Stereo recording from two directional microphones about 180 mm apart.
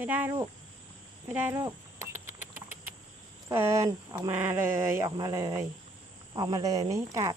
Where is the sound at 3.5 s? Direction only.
15° right (ahead or behind).